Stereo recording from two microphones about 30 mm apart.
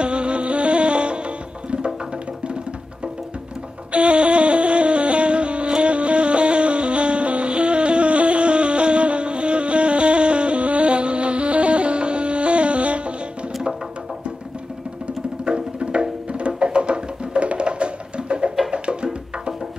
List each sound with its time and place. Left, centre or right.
0.0 s music: right
3.9 s music: right
15.8 s music: right